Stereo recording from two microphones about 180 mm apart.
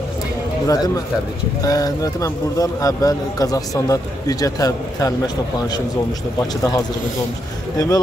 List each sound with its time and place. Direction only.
0.7 s speech: 20° left (ahead or behind)
6.4 s speech: 20° left (ahead or behind)